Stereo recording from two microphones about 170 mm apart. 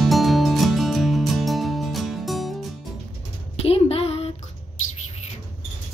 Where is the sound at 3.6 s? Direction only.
35° left (ahead or behind).